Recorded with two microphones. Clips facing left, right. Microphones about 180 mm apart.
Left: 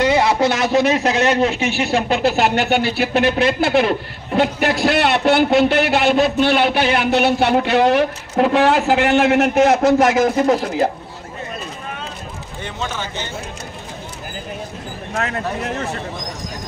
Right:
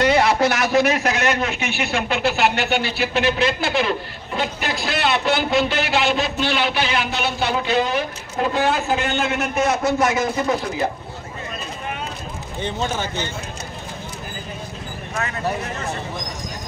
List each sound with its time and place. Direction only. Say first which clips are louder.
0.0 s a man's voice: left 1 dB; 20° left (ahead or behind); by 9.8 s 65° left (ahead or behind)
10.3 s speech: left 5 dB; 45° left (ahead or behind)
15.2 s speech: even; 65° left (ahead or behind)